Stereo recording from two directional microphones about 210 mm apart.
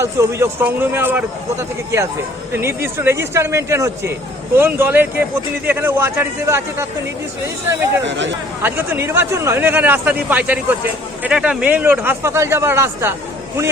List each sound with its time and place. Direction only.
0.0 s speech: 15° right (ahead or behind)
8.0 s speech: 60° right (ahead or behind)
8.6 s speech: 10° right (ahead or behind)